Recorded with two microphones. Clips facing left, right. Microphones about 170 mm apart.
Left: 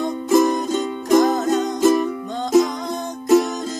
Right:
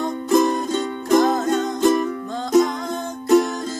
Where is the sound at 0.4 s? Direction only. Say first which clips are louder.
Left 2 dB; 15° left (ahead or behind).